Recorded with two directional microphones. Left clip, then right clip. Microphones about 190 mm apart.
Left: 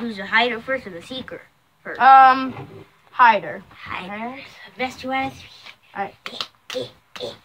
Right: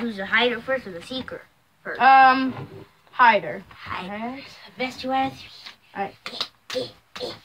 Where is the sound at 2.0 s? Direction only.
20° right (ahead or behind).